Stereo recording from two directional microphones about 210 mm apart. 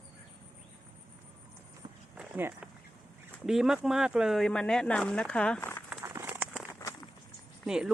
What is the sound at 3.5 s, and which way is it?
Speech, centre (ahead or behind).